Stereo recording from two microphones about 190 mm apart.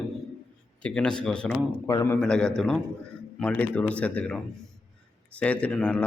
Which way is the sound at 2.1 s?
5° left (ahead or behind).